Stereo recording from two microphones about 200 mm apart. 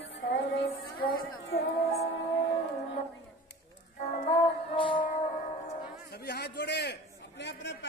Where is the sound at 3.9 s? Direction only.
35° left (ahead or behind).